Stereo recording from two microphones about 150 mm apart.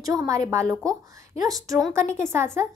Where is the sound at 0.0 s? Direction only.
20° right (ahead or behind).